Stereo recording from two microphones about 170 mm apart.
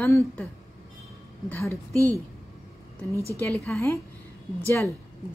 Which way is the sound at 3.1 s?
15° right (ahead or behind).